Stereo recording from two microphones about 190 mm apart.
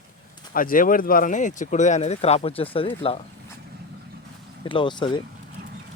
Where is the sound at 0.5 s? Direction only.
45° left (ahead or behind); by 3.2 s 30° left (ahead or behind).